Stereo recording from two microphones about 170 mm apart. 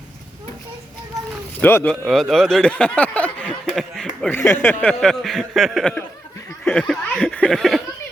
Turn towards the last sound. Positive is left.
turn(degrees=0)  # may be behind; listen again after turning